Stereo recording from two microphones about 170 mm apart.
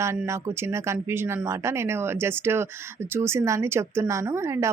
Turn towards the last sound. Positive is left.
turn(degrees=-15)  # may be behind; listen again after turning